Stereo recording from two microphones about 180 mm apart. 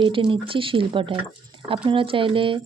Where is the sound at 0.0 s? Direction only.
25° right (ahead or behind).